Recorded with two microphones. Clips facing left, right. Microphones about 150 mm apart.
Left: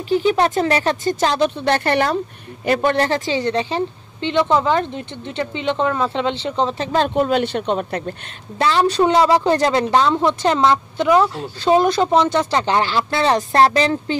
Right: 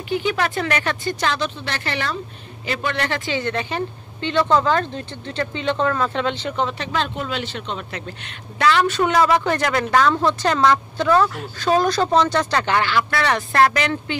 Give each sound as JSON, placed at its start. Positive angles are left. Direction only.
{"t": 0.1, "sound": "a woman's voice", "side_deg": 35}
{"t": 8.5, "sound": "a woman's voice", "side_deg": 30}
{"t": 12.6, "sound": "a woman's voice", "side_deg": 30}